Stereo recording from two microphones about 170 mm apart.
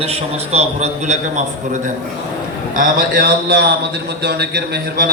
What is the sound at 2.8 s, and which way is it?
A man's voice, 55° right (ahead or behind).